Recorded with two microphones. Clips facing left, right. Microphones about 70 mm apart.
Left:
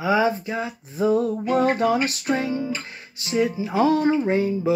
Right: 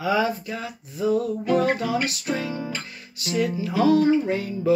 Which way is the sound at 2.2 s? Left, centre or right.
Left.